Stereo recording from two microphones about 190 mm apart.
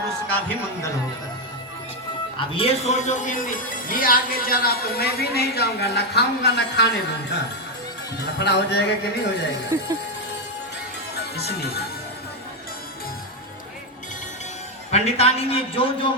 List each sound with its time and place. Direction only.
2.6 s speech: 30° left (ahead or behind); by 7.3 s 60° left (ahead or behind)
8.4 s a man's voice: 60° left (ahead or behind)
9.7 s speech: 15° right (ahead or behind)
11.3 s a man's voice: 60° left (ahead or behind)
14.8 s a man's voice: 35° left (ahead or behind)